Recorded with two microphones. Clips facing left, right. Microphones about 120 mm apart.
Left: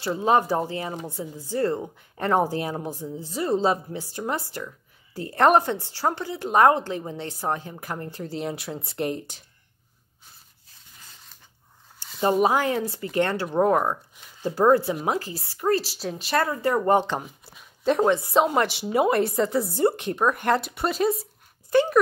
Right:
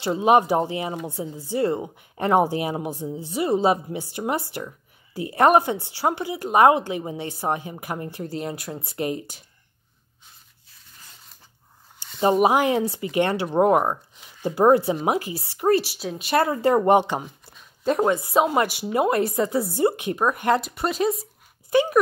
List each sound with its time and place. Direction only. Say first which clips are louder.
0.0 s a woman's voice: right 3 dB; 20° right (ahead or behind)
12.1 s a woman's voice: right 2 dB; 5° right (ahead or behind)
17.2 s a woman's voice: right 2 dB; 5° left (ahead or behind)